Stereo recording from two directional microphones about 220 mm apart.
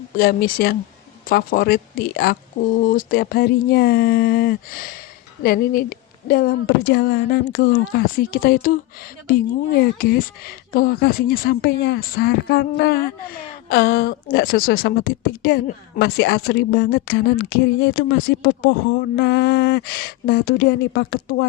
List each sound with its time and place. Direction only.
0.2 s speech: 45° left (ahead or behind)